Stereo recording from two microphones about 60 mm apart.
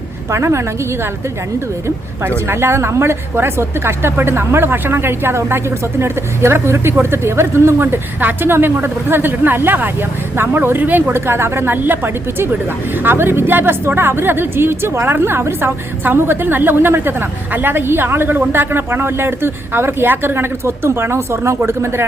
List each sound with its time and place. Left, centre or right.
0.3 s speech: right
2.2 s a woman's voice: right